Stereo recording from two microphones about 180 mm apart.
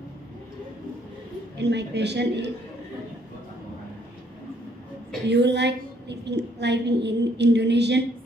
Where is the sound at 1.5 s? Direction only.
70° right (ahead or behind).